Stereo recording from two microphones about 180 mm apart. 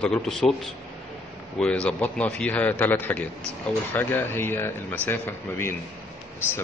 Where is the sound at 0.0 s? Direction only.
5° left (ahead or behind).